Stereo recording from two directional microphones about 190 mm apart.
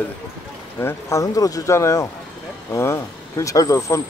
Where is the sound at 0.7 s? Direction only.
15° left (ahead or behind).